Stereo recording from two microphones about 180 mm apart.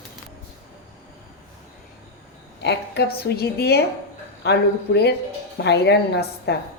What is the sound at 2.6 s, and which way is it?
A woman's voice, 65° left (ahead or behind).